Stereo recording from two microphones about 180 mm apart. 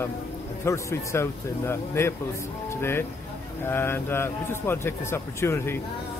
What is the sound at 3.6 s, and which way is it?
Speech, 10° left (ahead or behind).